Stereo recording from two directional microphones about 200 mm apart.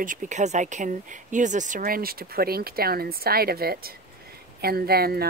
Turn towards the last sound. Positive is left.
turn(degrees=-50)  # may be behind; listen again after turning